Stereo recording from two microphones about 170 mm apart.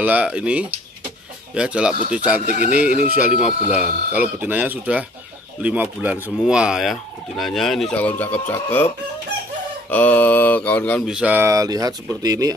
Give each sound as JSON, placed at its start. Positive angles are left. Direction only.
{"t": 0.0, "sound": "speech", "side_deg": -10}
{"t": 1.5, "sound": "fowl", "side_deg": -5}
{"t": 2.1, "sound": "speech", "side_deg": -10}
{"t": 5.6, "sound": "fowl", "side_deg": -10}
{"t": 9.8, "sound": "mantra", "side_deg": 10}
{"t": 11.1, "sound": "speech", "side_deg": -5}